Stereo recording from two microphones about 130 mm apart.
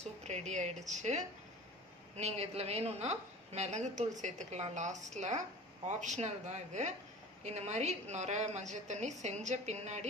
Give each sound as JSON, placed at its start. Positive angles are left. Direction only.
{"t": 0.2, "sound": "a woman's voice", "side_deg": -60}